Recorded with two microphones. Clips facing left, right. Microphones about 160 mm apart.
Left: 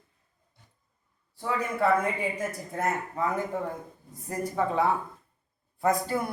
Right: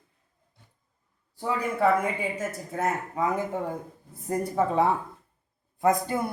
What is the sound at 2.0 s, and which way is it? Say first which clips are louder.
Speech: even; 5° right (ahead or behind).